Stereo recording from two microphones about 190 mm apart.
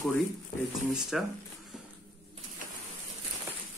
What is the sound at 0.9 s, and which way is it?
Speech, centre (ahead or behind).